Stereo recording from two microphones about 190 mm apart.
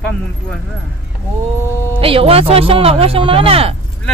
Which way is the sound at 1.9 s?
30° right (ahead or behind).